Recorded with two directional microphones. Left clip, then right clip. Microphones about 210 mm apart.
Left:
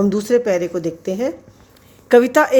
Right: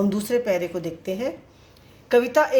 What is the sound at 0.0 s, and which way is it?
A woman's voice, 40° left (ahead or behind).